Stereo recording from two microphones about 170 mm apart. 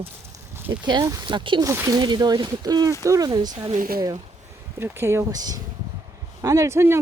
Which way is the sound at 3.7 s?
55° right (ahead or behind).